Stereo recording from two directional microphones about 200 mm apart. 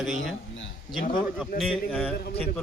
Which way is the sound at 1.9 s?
10° left (ahead or behind).